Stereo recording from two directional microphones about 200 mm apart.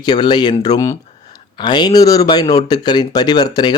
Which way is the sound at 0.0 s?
20° left (ahead or behind).